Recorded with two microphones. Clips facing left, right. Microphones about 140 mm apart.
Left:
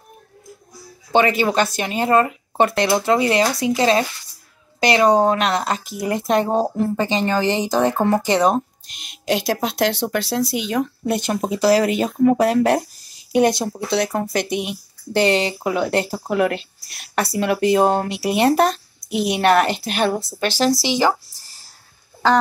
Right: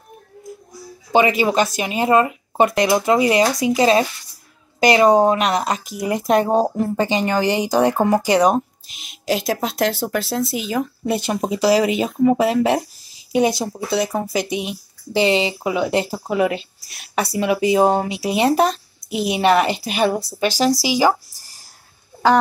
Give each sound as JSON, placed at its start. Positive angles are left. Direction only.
{"t": 1.1, "sound": "speech", "side_deg": -10}
{"t": 5.1, "sound": "speech", "side_deg": -20}
{"t": 20.8, "sound": "a sound", "side_deg": -10}